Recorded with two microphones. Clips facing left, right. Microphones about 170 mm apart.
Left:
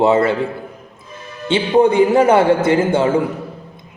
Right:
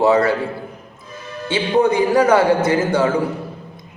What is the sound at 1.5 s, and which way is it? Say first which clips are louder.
A man's voice: left 3 dB; 25° left (ahead or behind).